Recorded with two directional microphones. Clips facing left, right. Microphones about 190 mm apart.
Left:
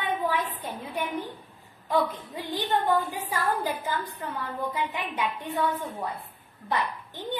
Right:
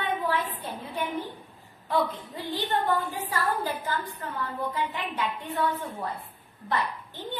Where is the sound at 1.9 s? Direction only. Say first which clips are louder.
Left 1 dB; 15° left (ahead or behind).